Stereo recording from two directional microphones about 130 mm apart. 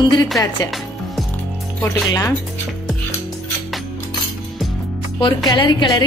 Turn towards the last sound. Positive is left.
turn(degrees=35)  # may be behind; listen again after turning